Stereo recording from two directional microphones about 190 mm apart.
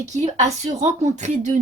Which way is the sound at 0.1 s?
35° right (ahead or behind).